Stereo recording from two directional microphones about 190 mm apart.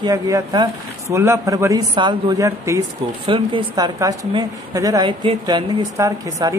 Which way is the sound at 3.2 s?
25° right (ahead or behind).